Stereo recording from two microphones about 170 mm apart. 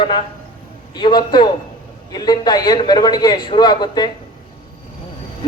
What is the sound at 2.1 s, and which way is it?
A man's voice, 25° left (ahead or behind).